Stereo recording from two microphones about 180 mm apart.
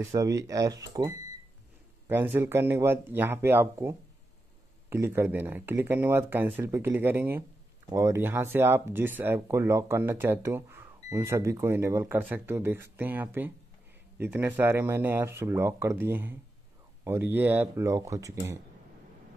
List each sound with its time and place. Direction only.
0.0 s speech: 20° right (ahead or behind)